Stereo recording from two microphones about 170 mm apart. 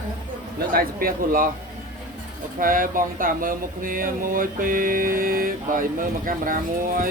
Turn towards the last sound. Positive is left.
turn(degrees=-55)  # may be behind; listen again after turning